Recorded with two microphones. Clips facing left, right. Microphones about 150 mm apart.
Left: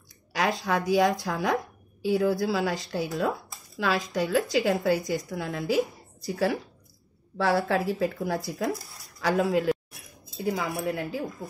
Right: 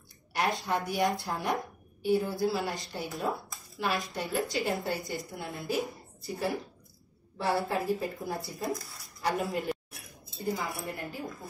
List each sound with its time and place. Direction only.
0.3 s a woman's voice: 90° left